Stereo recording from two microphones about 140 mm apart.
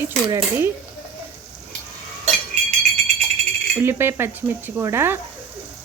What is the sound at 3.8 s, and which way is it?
Speech, 15° right (ahead or behind).